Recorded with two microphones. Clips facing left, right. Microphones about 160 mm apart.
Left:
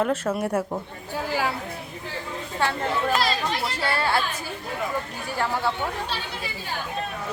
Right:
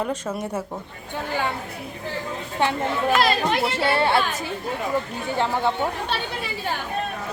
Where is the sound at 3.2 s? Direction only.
55° right (ahead or behind).